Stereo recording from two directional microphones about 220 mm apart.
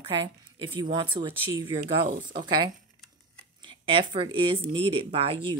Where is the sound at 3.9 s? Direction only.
25° right (ahead or behind).